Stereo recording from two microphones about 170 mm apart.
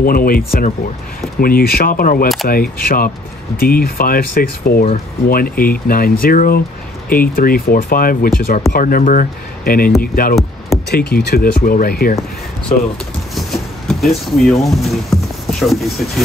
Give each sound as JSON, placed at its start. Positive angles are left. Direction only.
{"t": 0.0, "sound": "speech", "side_deg": 60}
{"t": 13.3, "sound": "speech", "side_deg": 0}